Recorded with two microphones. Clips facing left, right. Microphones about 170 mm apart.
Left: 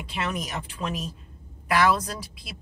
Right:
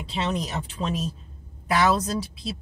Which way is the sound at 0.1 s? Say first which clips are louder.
Right 3 dB; 25° right (ahead or behind).